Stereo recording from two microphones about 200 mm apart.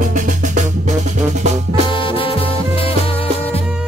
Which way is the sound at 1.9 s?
25° left (ahead or behind).